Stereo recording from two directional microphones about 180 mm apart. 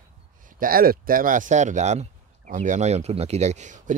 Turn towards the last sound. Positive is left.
turn(degrees=-45)  # may be behind; listen again after turning